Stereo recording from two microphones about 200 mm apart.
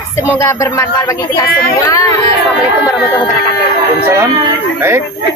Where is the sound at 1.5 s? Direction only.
50° left (ahead or behind).